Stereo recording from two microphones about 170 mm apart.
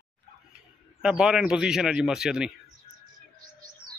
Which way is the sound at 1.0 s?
5° right (ahead or behind).